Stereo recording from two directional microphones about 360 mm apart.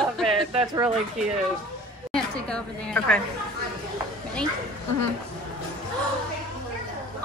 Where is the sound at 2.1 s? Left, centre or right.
Centre.